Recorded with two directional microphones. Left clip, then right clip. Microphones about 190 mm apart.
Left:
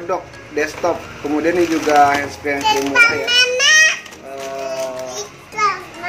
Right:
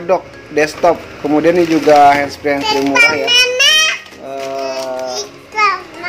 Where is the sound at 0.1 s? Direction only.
35° right (ahead or behind).